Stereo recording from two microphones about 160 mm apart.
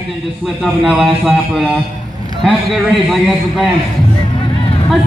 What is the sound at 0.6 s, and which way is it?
A man's voice, centre (ahead or behind).